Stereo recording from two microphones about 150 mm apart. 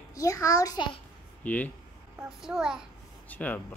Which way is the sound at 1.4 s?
10° left (ahead or behind).